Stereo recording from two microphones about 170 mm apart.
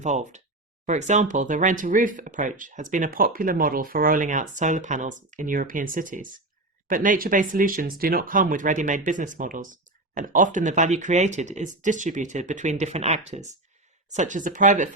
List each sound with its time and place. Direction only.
0.0 s speech: 45° right (ahead or behind)